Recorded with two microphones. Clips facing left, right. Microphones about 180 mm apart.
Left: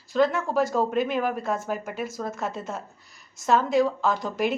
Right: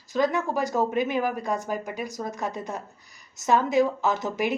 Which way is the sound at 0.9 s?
Centre (ahead or behind).